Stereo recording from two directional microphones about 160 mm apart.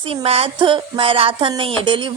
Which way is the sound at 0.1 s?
40° right (ahead or behind).